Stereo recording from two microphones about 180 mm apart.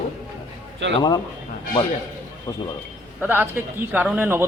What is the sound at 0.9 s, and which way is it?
Speech, 25° left (ahead or behind).